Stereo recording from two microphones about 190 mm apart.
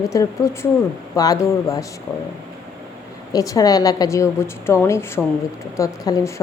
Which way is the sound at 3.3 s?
20° left (ahead or behind).